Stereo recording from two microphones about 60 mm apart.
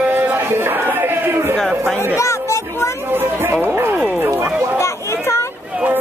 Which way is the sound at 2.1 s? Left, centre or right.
Left.